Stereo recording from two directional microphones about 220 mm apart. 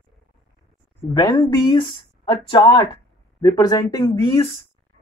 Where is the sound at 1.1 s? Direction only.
20° left (ahead or behind).